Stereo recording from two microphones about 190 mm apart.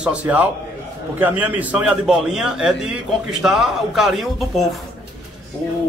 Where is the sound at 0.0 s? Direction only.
5° right (ahead or behind).